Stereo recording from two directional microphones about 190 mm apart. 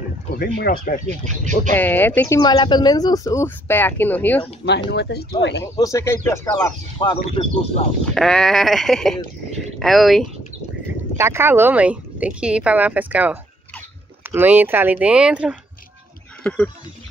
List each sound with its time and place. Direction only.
0.4 s speech: 50° left (ahead or behind)
1.2 s speech: 40° right (ahead or behind)
1.8 s speech: 10° left (ahead or behind)
4.6 s speech: 65° left (ahead or behind)
5.8 s speech: 15° left (ahead or behind)
8.0 s speech: 5° left (ahead or behind)
11.1 s speech: 15° right (ahead or behind)
16.4 s speech: 5° left (ahead or behind)